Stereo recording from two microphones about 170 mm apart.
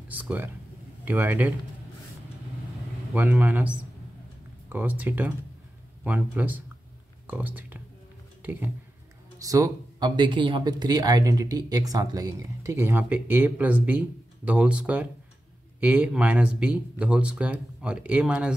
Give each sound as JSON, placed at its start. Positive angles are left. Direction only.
{"t": 0.1, "sound": "speech", "side_deg": -10}
{"t": 3.2, "sound": "speech", "side_deg": -10}